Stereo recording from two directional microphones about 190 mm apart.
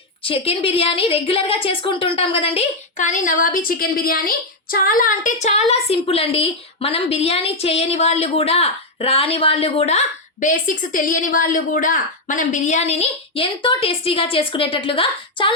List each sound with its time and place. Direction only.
0.2 s a woman's voice: 30° left (ahead or behind)
10.4 s a woman's voice: 45° left (ahead or behind); by 15.5 s 25° left (ahead or behind)